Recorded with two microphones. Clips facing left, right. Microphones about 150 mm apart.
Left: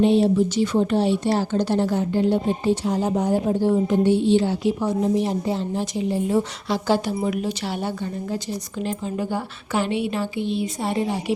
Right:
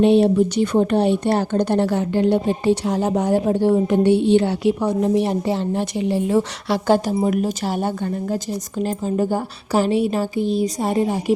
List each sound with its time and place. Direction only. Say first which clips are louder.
0.0 s speech: right 3 dB; 60° right (ahead or behind); by 6.7 s 85° right
6.8 s a woman's voice: right 5 dB; 50° right (ahead or behind)